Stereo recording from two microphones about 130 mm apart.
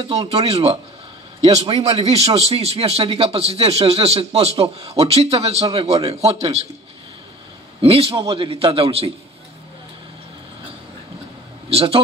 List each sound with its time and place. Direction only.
0.1 s a man's voice: 50° right (ahead or behind)
7.8 s a man's voice: 50° right (ahead or behind)
11.7 s a man's voice: 45° right (ahead or behind)